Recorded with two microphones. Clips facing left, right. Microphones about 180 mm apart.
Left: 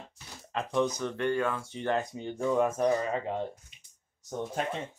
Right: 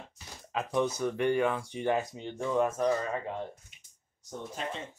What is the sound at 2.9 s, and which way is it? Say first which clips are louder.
Speech: left 2 dB; 20° left (ahead or behind).